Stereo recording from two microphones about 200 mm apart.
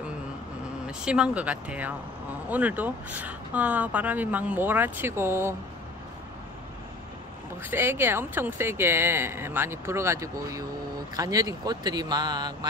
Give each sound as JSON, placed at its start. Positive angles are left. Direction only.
{"t": 0.8, "sound": "speech", "side_deg": -5}
{"t": 7.6, "sound": "speech", "side_deg": -10}